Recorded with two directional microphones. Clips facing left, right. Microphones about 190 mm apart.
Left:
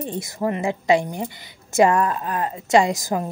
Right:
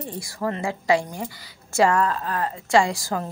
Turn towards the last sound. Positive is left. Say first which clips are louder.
# left 3 dB
turn(degrees=20)  # may be behind; listen again after turning